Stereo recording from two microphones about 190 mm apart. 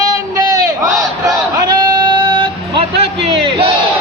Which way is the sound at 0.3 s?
20° right (ahead or behind).